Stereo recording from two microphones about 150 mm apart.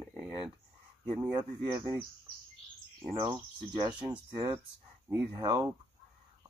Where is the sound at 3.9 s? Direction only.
10° right (ahead or behind).